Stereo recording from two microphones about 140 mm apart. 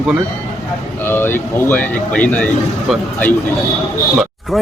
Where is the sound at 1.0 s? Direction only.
15° left (ahead or behind).